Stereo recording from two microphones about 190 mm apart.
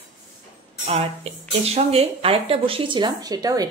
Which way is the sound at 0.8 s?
30° right (ahead or behind).